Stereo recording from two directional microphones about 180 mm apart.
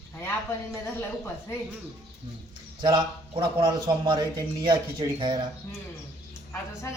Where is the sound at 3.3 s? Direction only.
25° right (ahead or behind).